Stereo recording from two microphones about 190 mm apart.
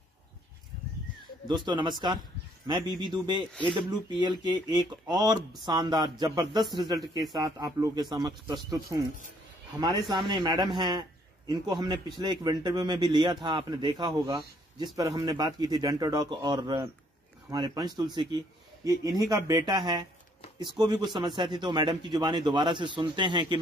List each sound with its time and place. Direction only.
1.7 s a man's voice: 25° right (ahead or behind)
9.8 s a man's voice: 25° right (ahead or behind)